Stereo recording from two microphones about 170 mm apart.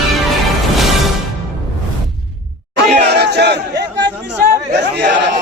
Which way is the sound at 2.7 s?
75° right (ahead or behind).